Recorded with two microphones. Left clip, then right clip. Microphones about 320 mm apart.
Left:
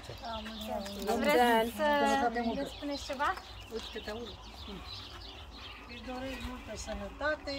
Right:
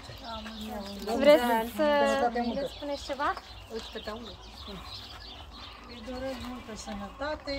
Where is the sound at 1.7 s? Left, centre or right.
Centre.